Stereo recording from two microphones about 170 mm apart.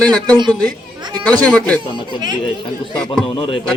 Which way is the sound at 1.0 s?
25° right (ahead or behind).